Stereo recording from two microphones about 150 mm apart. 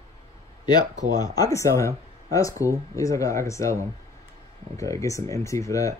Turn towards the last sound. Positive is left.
turn(degrees=20)  # may be behind; listen again after turning